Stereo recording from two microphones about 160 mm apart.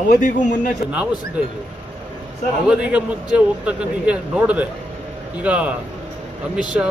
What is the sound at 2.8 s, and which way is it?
Speech, 5° right (ahead or behind).